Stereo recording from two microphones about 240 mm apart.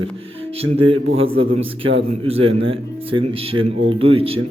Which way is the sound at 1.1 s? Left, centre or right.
Right.